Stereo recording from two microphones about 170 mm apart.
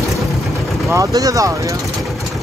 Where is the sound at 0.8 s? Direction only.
20° right (ahead or behind).